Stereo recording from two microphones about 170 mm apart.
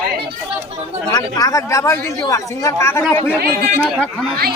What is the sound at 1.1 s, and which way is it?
Speech, 20° left (ahead or behind).